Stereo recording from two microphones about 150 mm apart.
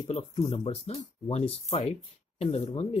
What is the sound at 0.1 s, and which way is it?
Speech, 45° left (ahead or behind).